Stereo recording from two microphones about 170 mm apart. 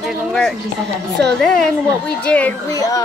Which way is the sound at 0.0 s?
Centre (ahead or behind).